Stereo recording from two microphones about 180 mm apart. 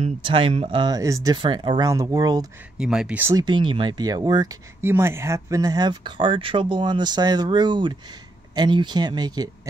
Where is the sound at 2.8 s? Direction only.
5° right (ahead or behind).